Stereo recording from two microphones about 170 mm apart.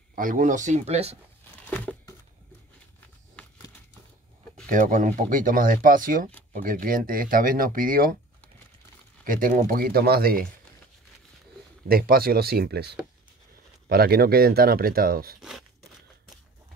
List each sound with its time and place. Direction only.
0.1 s speech: 55° right (ahead or behind); by 1.1 s 40° right (ahead or behind)
1.7 s crumpling: 10° left (ahead or behind)
4.6 s speech: 50° right (ahead or behind)
9.2 s speech: 55° right (ahead or behind)
11.9 s speech: 60° right (ahead or behind)